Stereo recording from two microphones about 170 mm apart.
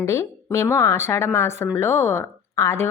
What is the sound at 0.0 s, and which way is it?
A woman's voice, 15° left (ahead or behind).